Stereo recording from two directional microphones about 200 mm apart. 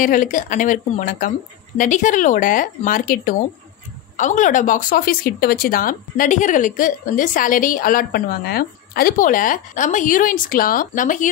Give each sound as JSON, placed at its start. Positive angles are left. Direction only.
{"t": 0.0, "sound": "speech", "side_deg": 40}